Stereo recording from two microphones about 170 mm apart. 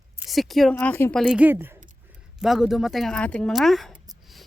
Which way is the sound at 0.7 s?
10° left (ahead or behind).